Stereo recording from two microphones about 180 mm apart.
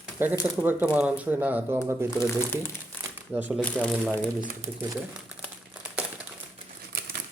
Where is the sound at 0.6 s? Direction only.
10° right (ahead or behind).